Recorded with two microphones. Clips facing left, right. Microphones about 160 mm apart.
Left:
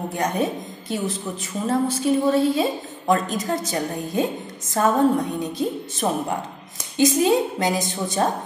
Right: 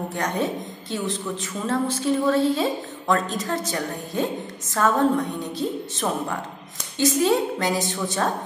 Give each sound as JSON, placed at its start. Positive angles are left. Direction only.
{"t": 0.1, "sound": "a woman's voice", "side_deg": 10}